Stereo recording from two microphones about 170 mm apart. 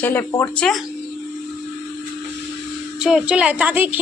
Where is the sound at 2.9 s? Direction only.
5° right (ahead or behind).